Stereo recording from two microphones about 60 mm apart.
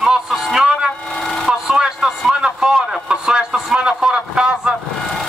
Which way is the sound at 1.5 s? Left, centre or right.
Centre.